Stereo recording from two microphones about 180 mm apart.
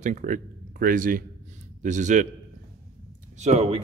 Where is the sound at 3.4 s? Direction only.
35° right (ahead or behind).